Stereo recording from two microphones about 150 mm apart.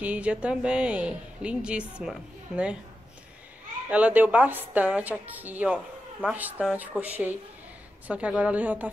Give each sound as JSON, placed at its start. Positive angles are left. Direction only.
{"t": 0.0, "sound": "a woman's voice", "side_deg": -10}
{"t": 3.9, "sound": "a woman's voice", "side_deg": -10}